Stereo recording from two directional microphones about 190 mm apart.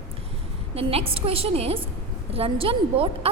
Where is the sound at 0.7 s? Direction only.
30° right (ahead or behind).